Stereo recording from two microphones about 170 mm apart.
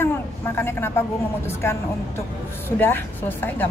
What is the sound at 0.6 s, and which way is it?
Speech, 15° left (ahead or behind).